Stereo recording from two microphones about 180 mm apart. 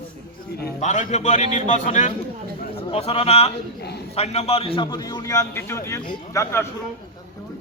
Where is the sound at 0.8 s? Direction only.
40° left (ahead or behind); by 6.7 s 15° left (ahead or behind).